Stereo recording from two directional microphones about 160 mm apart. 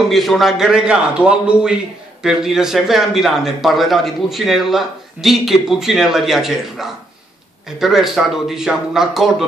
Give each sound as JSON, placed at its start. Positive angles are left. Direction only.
{"t": 0.1, "sound": "a man's voice", "side_deg": 0}